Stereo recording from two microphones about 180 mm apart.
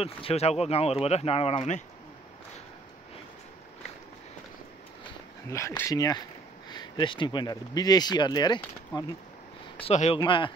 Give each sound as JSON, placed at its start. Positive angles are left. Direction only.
{"t": 0.0, "sound": "speech", "side_deg": 35}
{"t": 5.5, "sound": "speech", "side_deg": 15}
{"t": 9.8, "sound": "speech", "side_deg": 35}